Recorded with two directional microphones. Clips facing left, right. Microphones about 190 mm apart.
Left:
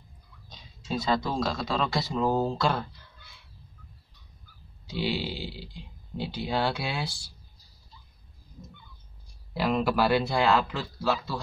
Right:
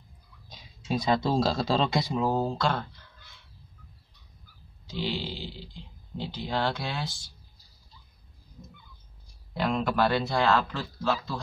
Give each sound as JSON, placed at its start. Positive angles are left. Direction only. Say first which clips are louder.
{"t": 0.5, "sound": "speech", "louder": "right 2 dB", "side_deg": -15}
{"t": 1.9, "sound": "speech", "louder": "right 2 dB", "side_deg": -15}
{"t": 2.1, "sound": "speech", "louder": "left 4 dB", "side_deg": 0}
{"t": 4.8, "sound": "a man's voice", "louder": "left 2 dB", "side_deg": 10}
{"t": 9.5, "sound": "a man's voice", "louder": "left 2 dB", "side_deg": 5}